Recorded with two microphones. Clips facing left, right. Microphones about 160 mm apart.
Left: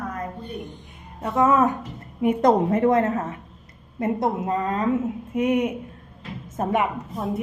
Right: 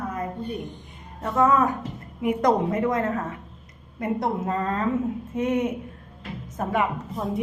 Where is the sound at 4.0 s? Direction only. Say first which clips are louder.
Left 2 dB; 20° left (ahead or behind).